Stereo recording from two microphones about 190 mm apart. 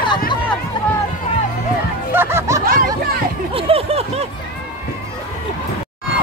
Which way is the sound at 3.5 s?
30° right (ahead or behind).